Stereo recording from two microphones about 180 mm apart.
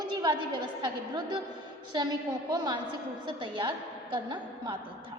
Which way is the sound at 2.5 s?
25° right (ahead or behind).